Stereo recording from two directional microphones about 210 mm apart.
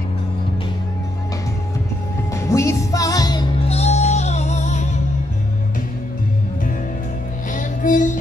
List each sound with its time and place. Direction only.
2.3 s music: 15° left (ahead or behind); by 4.8 s 35° left (ahead or behind)
7.5 s music: 40° left (ahead or behind)